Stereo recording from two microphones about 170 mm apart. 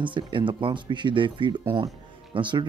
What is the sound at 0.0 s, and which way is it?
Speech, 30° right (ahead or behind).